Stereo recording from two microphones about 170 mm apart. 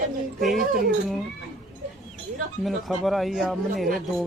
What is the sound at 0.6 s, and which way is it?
Speech, 55° right (ahead or behind).